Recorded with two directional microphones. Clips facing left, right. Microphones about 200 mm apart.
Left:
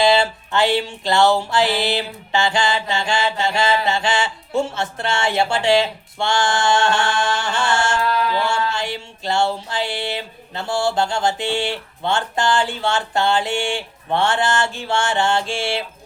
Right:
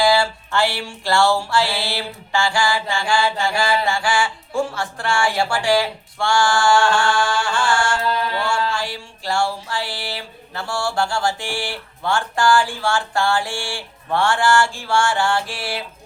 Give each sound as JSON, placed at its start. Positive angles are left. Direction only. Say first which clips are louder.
{"t": 0.0, "sound": "music", "louder": "left 1 dB", "side_deg": 20}